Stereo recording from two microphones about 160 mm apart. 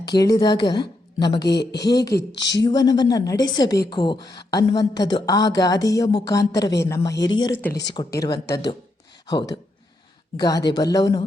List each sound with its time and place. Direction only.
0.0 s a woman's voice: 25° left (ahead or behind)
1.5 s speech: 90° left
1.8 s a woman's voice: 25° left (ahead or behind)
7.7 s speech: 90° left
7.9 s a woman's voice: 25° left (ahead or behind)